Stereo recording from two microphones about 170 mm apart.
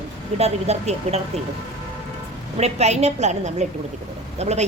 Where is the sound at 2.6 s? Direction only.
40° right (ahead or behind).